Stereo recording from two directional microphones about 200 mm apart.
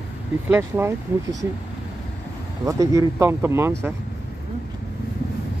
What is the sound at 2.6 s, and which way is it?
Speech, 15° right (ahead or behind).